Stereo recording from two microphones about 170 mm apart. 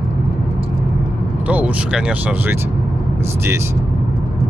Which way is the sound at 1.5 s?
5° right (ahead or behind).